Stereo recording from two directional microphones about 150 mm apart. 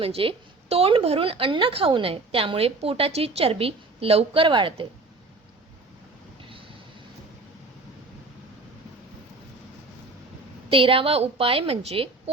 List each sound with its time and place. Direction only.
0.0 s a woman's voice: 40° right (ahead or behind)
10.7 s a woman's voice: 35° right (ahead or behind)